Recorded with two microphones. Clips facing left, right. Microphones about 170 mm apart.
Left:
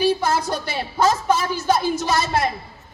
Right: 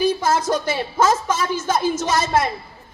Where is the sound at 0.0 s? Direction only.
40° right (ahead or behind).